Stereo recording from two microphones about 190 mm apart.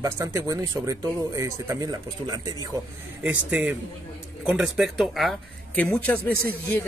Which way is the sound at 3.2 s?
10° right (ahead or behind).